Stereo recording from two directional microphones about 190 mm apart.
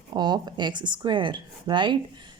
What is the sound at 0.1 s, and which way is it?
A woman's voice, 20° right (ahead or behind).